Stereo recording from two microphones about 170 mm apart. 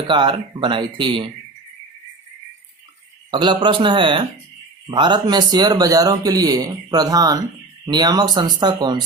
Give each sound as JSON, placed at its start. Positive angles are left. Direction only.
{"t": 0.1, "sound": "speech", "side_deg": -30}
{"t": 3.3, "sound": "speech", "side_deg": -25}